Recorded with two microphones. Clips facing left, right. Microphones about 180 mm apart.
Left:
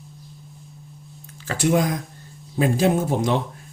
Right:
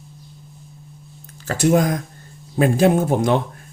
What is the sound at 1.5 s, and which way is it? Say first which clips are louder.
Speech: right 3 dB; 45° right (ahead or behind).